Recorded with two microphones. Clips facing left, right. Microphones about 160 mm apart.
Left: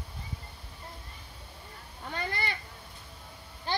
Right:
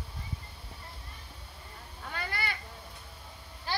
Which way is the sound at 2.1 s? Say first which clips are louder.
Left 2 dB; 25° left (ahead or behind).